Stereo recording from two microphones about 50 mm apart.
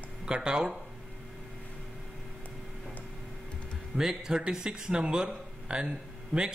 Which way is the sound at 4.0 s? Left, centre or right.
Centre.